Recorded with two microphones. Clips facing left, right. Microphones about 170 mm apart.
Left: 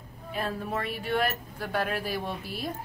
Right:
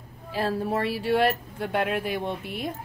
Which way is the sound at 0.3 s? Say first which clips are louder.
Right 5 dB; 30° right (ahead or behind).